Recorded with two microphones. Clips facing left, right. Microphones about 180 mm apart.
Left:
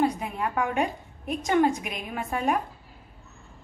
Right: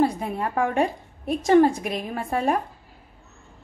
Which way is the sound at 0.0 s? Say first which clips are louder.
Right 3 dB; 35° right (ahead or behind).